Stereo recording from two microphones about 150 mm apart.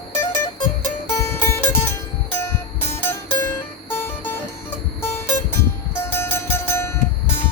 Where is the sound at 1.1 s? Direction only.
20° left (ahead or behind).